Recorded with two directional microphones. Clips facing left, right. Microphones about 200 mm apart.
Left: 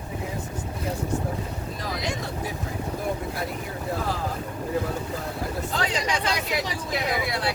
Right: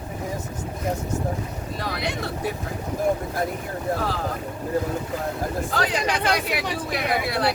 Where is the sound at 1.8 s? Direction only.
65° right (ahead or behind).